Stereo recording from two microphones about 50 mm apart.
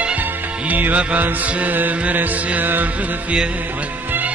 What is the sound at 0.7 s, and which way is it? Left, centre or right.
Mantra, right.